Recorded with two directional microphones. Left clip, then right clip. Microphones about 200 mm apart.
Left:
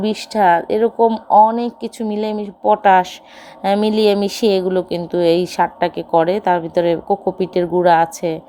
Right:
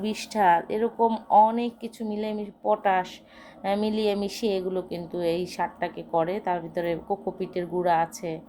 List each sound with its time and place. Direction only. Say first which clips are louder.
0.0 s speech: left 8 dB; 30° left (ahead or behind)